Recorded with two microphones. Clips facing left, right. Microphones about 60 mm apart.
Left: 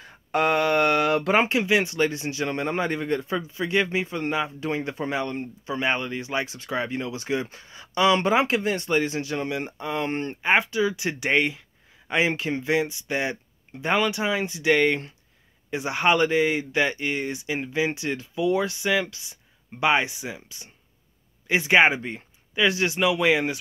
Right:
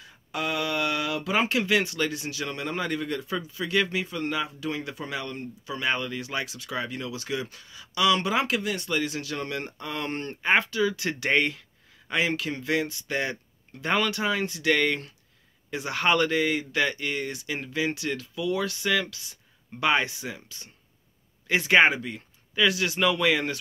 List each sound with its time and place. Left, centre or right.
0.0 s a sound: left
1.4 s speech: left
22.9 s speech: centre